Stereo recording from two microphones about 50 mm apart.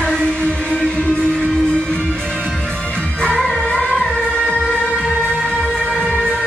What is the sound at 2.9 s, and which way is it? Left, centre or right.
Music, left.